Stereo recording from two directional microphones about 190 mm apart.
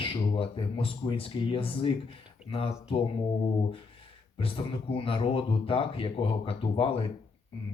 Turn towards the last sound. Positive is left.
turn(degrees=30)  # may be behind; listen again after turning